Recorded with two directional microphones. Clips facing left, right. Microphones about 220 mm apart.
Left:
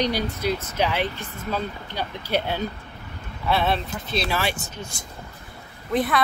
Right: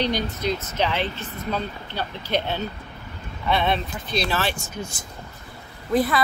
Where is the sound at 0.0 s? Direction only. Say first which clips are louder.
Even; 10° left (ahead or behind).